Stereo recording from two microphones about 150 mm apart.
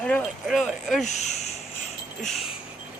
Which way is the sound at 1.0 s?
50° left (ahead or behind).